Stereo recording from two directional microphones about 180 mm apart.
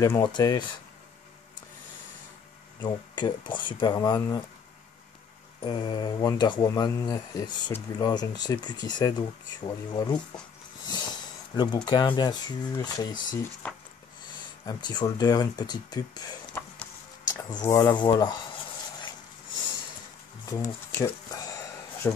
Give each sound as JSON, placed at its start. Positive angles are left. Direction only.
{"t": 0.0, "sound": "speech", "side_deg": 20}
{"t": 2.8, "sound": "speech", "side_deg": 25}
{"t": 5.6, "sound": "speech", "side_deg": 30}
{"t": 13.6, "sound": "speech", "side_deg": 10}
{"t": 14.7, "sound": "speech", "side_deg": 25}
{"t": 20.4, "sound": "a sound", "side_deg": 20}